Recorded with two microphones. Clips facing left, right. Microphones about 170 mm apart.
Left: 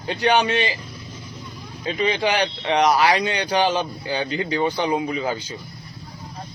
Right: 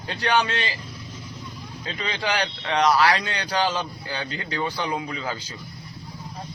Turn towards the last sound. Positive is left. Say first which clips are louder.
# left 6 dB
turn(degrees=20)  # may be behind; listen again after turning